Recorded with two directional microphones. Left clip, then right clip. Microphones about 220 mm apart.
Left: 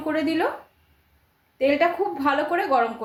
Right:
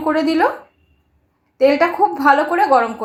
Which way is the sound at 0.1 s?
15° right (ahead or behind).